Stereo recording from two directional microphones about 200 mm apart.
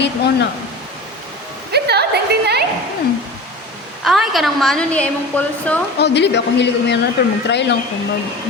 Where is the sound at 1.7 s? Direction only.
55° right (ahead or behind).